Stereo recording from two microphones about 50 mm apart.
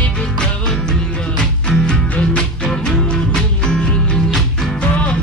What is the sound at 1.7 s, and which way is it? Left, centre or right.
Music, centre.